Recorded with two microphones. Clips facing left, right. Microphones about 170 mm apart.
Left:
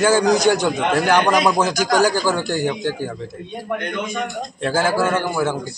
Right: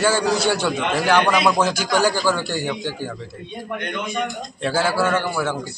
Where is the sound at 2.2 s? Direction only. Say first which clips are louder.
Left 1 dB; 15° left (ahead or behind).